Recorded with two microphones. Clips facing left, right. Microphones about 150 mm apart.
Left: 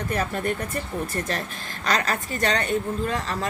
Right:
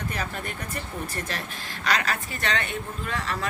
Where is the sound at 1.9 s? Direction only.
40° left (ahead or behind).